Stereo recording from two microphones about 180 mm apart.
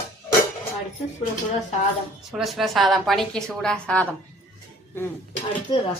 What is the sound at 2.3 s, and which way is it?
A woman's voice, centre (ahead or behind).